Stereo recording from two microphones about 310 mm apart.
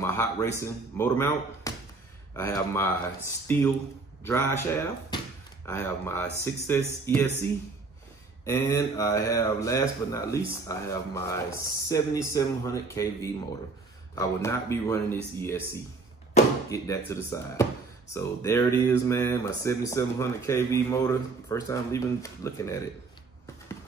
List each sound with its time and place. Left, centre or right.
0.0 s speech: centre
8.5 s speech: centre
16.4 s chop: left
16.7 s speech: centre